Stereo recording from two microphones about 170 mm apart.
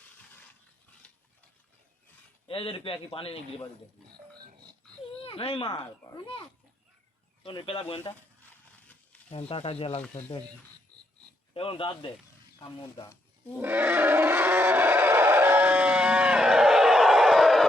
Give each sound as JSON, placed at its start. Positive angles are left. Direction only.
{"t": 2.5, "sound": "speech", "side_deg": 30}
{"t": 5.2, "sound": "speech", "side_deg": 35}
{"t": 7.4, "sound": "speech", "side_deg": 30}
{"t": 9.3, "sound": "speech", "side_deg": 35}
{"t": 11.5, "sound": "speech", "side_deg": 30}
{"t": 13.6, "sound": "wild animals", "side_deg": -10}